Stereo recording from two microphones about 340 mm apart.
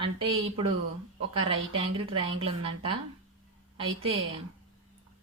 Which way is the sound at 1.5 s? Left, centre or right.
Centre.